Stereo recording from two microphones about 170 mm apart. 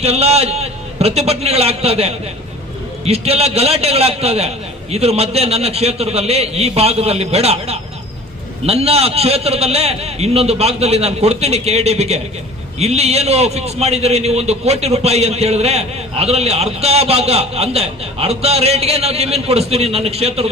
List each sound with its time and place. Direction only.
0.0 s a man's voice: 35° right (ahead or behind)